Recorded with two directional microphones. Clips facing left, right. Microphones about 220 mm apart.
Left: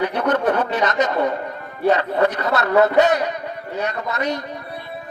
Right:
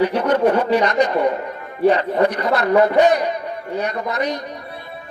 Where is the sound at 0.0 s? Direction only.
10° right (ahead or behind).